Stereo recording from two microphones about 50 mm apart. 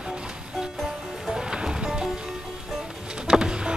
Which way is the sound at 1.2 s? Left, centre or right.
Centre.